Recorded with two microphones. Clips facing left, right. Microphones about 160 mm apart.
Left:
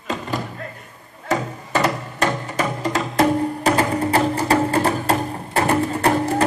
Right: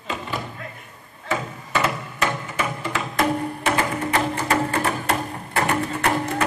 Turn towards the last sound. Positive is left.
turn(degrees=30)  # may be behind; listen again after turning